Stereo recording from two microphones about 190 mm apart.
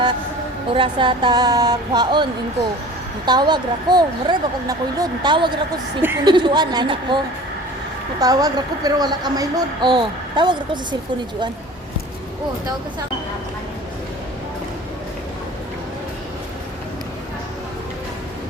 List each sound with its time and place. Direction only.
0.7 s a woman's voice: 25° right (ahead or behind)
3.2 s a woman's voice: 20° right (ahead or behind)
8.2 s a woman's voice: 20° right (ahead or behind)